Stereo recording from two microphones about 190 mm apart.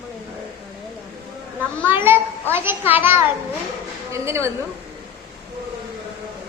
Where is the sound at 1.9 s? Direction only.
10° right (ahead or behind).